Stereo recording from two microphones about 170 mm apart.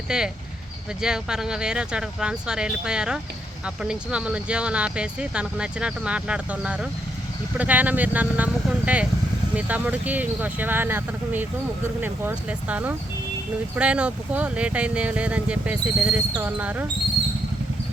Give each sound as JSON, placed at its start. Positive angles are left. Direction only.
{"t": 0.1, "sound": "speech", "side_deg": -5}